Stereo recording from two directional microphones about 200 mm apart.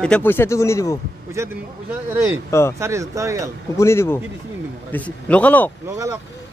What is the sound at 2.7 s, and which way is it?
Speech, 15° right (ahead or behind).